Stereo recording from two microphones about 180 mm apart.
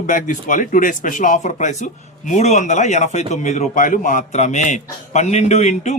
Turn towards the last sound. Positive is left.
turn(degrees=40)  # may be behind; listen again after turning